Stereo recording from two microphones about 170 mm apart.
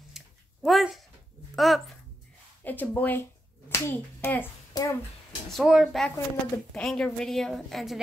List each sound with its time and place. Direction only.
0.1 s a sound: centre (ahead or behind)
1.5 s a child's voice: centre (ahead or behind)
4.7 s speech: 20° left (ahead or behind)
5.6 s a woman's voice: centre (ahead or behind)
6.1 s speech: 15° left (ahead or behind)
6.8 s a woman's voice: 5° left (ahead or behind)